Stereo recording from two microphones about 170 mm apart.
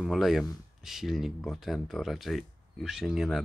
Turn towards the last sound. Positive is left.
turn(degrees=-5)  # may be behind; listen again after turning